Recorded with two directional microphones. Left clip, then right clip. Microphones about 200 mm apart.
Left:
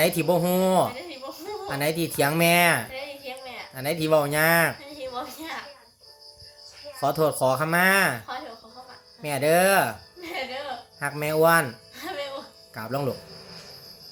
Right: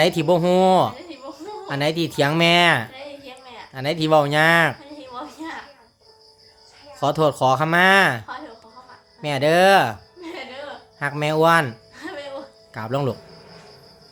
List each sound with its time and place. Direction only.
0.0 s speech: 25° right (ahead or behind)
7.0 s speech: 30° right (ahead or behind)
9.2 s speech: 30° right (ahead or behind)
11.0 s speech: 30° right (ahead or behind)
12.7 s speech: 30° right (ahead or behind)